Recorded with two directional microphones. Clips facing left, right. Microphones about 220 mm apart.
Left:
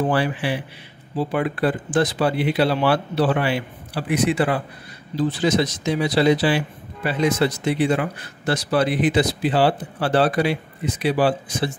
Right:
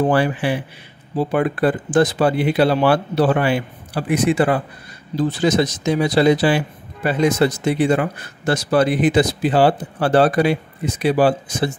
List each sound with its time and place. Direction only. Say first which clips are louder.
0.1 s speech: right 4 dB; 50° right (ahead or behind)